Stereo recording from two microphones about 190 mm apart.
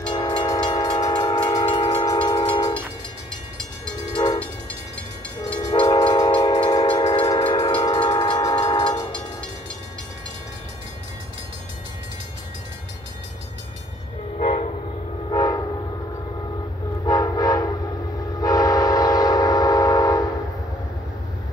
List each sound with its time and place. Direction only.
0.1 s train: 25° left (ahead or behind)
4.1 s train: 25° left (ahead or behind)
5.7 s train: 25° left (ahead or behind)
15.2 s train: 20° left (ahead or behind)
17.0 s train: 20° left (ahead or behind)